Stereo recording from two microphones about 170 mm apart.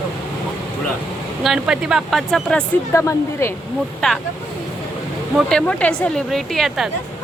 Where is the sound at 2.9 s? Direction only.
15° left (ahead or behind).